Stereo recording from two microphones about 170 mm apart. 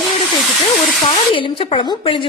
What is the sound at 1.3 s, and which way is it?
Speech, 30° left (ahead or behind).